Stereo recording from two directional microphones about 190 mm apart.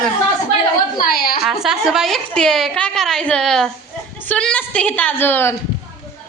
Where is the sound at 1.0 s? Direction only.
55° left (ahead or behind).